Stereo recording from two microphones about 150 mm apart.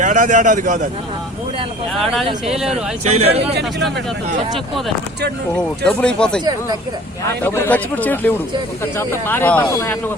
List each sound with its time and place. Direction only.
0.0 s a man's voice: 60° right (ahead or behind)
1.9 s speech: centre (ahead or behind)
2.6 s speech: 45° right (ahead or behind)
5.8 s speech: 5° left (ahead or behind)
7.3 s speech: 15° left (ahead or behind)